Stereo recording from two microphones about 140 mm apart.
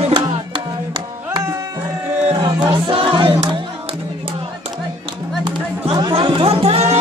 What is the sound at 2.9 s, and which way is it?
Music, 35° right (ahead or behind).